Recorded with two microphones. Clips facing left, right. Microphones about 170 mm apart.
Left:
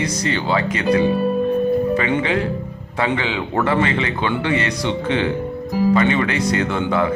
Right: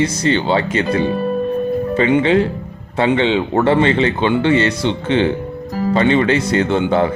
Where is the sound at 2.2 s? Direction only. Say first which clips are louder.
Right 6 dB; 30° right (ahead or behind).